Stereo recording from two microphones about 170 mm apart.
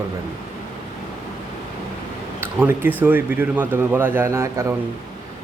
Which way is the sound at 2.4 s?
10° right (ahead or behind).